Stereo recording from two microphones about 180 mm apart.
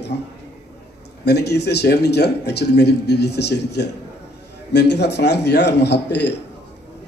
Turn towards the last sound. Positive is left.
turn(degrees=70)  # may be behind; listen again after turning